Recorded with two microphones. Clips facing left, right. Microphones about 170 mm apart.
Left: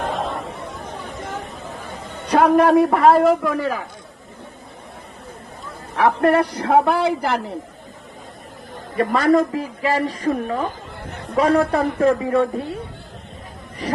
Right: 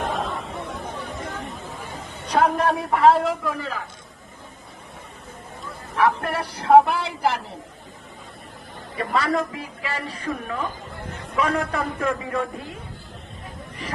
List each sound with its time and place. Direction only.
0.2 s a sound: 40° left (ahead or behind)
2.2 s a man's voice: 60° left (ahead or behind)
6.0 s a man's voice: 65° left (ahead or behind)
9.0 s a woman's voice: 45° left (ahead or behind)